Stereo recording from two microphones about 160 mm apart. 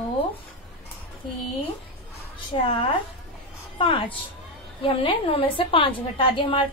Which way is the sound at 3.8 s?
30° left (ahead or behind).